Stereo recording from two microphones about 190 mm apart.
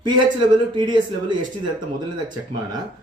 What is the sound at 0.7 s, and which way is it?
Speech, 25° right (ahead or behind).